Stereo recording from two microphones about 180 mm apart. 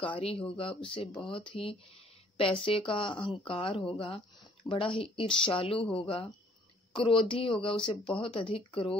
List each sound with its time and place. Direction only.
0.1 s speech: 30° left (ahead or behind)